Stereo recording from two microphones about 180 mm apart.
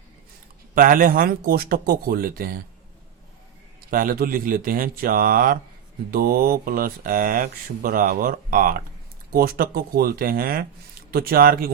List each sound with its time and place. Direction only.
0.8 s speech: 50° right (ahead or behind)
3.8 s speech: 55° right (ahead or behind)